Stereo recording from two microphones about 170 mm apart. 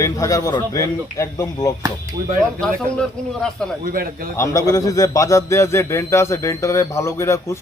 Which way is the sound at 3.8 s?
55° right (ahead or behind).